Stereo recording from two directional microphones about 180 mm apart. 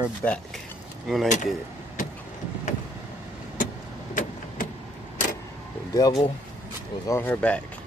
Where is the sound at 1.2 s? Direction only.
45° left (ahead or behind).